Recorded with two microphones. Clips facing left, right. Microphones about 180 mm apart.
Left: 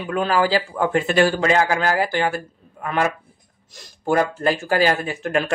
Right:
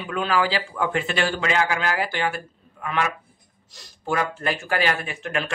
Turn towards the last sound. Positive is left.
turn(degrees=40)  # may be behind; listen again after turning